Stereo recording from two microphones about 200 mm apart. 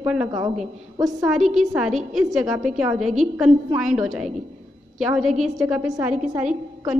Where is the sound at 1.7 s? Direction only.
Centre (ahead or behind).